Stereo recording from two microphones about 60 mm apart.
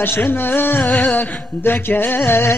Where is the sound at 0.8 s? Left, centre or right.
Centre.